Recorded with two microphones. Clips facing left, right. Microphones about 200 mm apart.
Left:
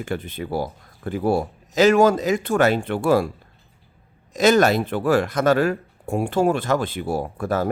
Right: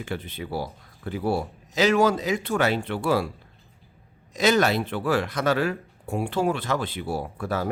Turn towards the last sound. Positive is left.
turn(degrees=45)  # may be behind; listen again after turning